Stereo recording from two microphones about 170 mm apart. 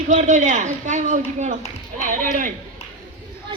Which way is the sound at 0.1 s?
45° right (ahead or behind).